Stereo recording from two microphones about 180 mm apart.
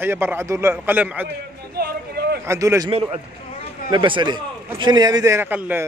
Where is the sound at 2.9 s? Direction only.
30° right (ahead or behind).